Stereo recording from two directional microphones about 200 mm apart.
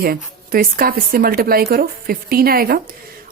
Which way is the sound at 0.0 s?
45° right (ahead or behind).